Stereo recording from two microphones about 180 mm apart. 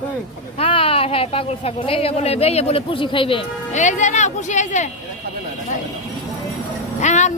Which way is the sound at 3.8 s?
40° left (ahead or behind).